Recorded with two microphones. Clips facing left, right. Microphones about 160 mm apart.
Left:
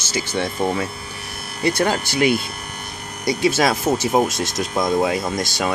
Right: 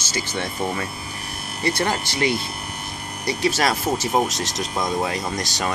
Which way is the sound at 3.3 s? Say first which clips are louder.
Left 3 dB; 15° left (ahead or behind).